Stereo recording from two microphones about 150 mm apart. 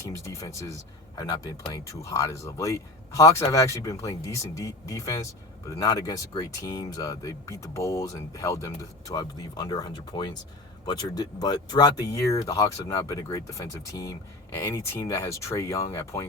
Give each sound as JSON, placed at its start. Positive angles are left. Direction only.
{"t": 0.0, "sound": "speech", "side_deg": 20}